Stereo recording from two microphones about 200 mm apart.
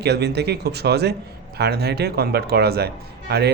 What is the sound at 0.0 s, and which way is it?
Speech, 55° right (ahead or behind).